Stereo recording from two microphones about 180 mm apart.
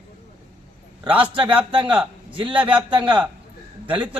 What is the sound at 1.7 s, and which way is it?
A man's voice, 25° right (ahead or behind).